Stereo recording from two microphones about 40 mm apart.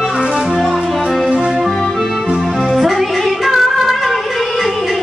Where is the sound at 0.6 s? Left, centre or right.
Centre.